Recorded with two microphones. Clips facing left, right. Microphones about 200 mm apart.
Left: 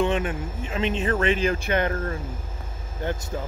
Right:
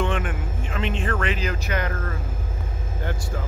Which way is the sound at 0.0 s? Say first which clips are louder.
Left 2 dB; 20° left (ahead or behind).